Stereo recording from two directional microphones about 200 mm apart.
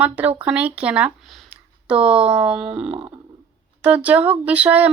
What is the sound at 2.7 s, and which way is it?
Stomach rumble, 30° right (ahead or behind).